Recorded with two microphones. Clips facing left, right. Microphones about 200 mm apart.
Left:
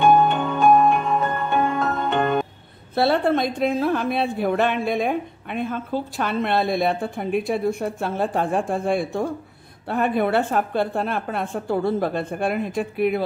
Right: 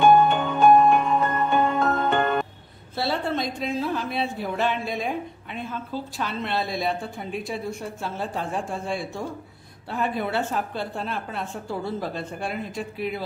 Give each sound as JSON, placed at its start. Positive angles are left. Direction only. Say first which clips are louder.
{"t": 0.0, "sound": "music", "louder": "even", "side_deg": 0}
{"t": 3.0, "sound": "a woman's voice", "louder": "left 7 dB", "side_deg": 60}